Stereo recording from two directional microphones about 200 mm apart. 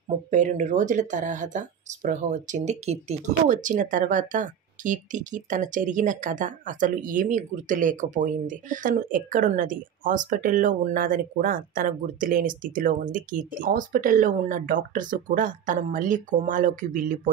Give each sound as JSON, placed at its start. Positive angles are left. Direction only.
{"t": 0.3, "sound": "speech", "side_deg": -35}